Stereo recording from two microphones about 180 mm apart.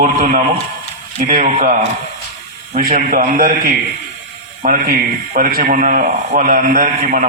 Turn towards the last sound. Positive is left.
turn(degrees=-45)  # may be behind; listen again after turning